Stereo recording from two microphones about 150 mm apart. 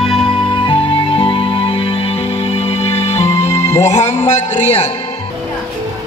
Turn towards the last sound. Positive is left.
turn(degrees=45)  # may be behind; listen again after turning